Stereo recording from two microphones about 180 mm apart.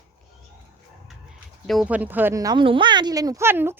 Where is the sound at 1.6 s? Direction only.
Centre (ahead or behind).